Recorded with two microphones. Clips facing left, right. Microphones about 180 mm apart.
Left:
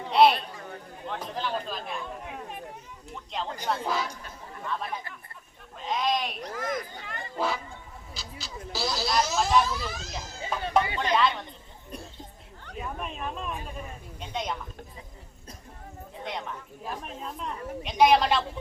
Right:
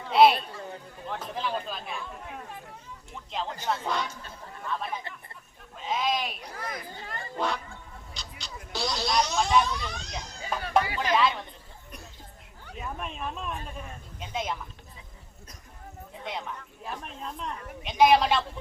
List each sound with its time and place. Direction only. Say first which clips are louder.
0.1 s a woman's voice: right 1 dB; centre (ahead or behind)
3.1 s a woman's voice: even; centre (ahead or behind)
6.6 s speech: left 6 dB; 45° left (ahead or behind)
7.3 s a woman's voice: left 1 dB; 5° left (ahead or behind)
10.4 s speech: even; 20° left (ahead or behind)
11.1 s a woman's voice: right 1 dB; centre (ahead or behind)
12.6 s a woman's voice: left 1 dB; centre (ahead or behind)
16.2 s a woman's voice: left 1 dB; centre (ahead or behind)